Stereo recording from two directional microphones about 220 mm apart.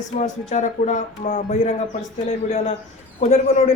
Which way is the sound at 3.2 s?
30° left (ahead or behind).